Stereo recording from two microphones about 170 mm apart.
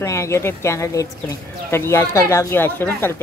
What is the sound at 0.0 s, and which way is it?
Speech, 15° left (ahead or behind).